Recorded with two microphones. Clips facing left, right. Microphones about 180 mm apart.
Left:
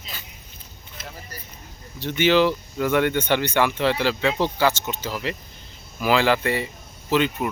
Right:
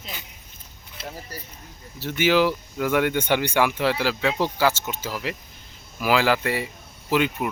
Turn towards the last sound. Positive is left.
turn(degrees=-10)  # may be behind; listen again after turning